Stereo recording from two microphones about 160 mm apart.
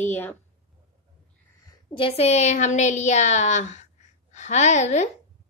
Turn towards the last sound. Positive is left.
turn(degrees=45)  # may be behind; listen again after turning